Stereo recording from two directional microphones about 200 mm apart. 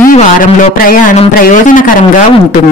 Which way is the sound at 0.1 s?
35° left (ahead or behind).